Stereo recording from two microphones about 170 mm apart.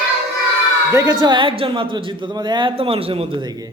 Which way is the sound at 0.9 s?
25° right (ahead or behind).